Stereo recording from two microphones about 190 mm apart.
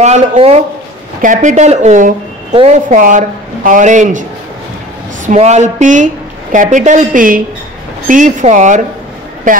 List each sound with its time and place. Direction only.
0.0 s a woman's voice: 35° right (ahead or behind)